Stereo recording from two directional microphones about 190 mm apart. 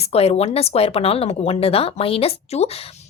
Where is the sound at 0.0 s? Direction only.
30° left (ahead or behind).